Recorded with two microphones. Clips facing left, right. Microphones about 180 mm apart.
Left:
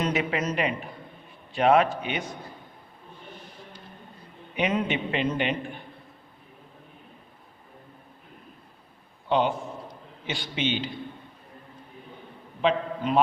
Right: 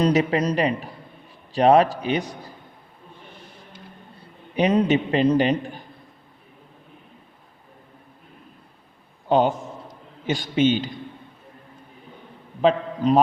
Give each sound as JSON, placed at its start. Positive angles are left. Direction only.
{"t": 0.0, "sound": "a man's voice", "side_deg": -40}
{"t": 4.5, "sound": "a man's voice", "side_deg": -35}
{"t": 9.3, "sound": "a man's voice", "side_deg": -45}
{"t": 12.6, "sound": "a man's voice", "side_deg": -40}